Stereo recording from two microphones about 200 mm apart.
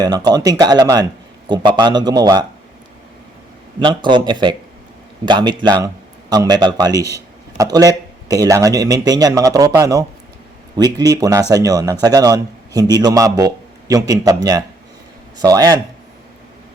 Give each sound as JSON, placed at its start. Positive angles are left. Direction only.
{"t": 0.0, "sound": "speech", "side_deg": -20}
{"t": 3.8, "sound": "a man's voice", "side_deg": -25}